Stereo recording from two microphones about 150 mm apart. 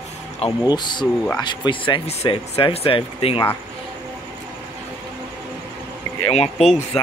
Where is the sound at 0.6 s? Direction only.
30° left (ahead or behind).